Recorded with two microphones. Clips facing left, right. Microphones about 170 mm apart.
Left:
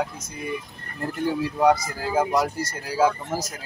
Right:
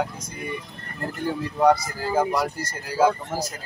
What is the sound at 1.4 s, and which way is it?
Speech, 10° left (ahead or behind).